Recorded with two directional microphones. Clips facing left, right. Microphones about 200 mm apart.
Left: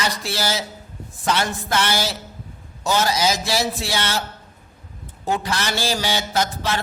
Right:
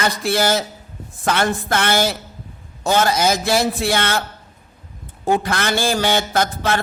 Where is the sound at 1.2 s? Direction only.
55° right (ahead or behind).